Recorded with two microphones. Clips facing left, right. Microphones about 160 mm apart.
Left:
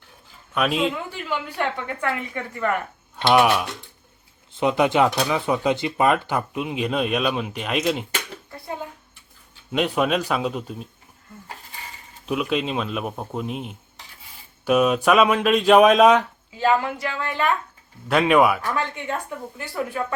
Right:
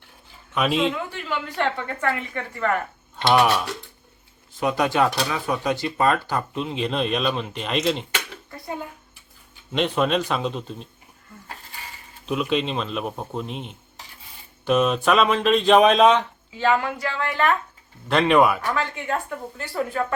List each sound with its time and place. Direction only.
0.5 s speech: centre (ahead or behind)
1.1 s speech: 15° left (ahead or behind)
4.5 s speech: 20° left (ahead or behind)
9.7 s speech: 5° left (ahead or behind)
12.2 s speech: 5° left (ahead or behind)
18.8 s speech: 15° left (ahead or behind)